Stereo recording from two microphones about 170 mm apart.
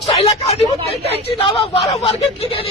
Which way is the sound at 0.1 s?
35° left (ahead or behind).